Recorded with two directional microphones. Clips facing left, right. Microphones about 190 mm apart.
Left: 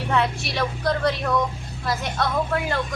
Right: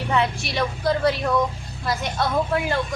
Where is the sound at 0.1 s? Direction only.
Centre (ahead or behind).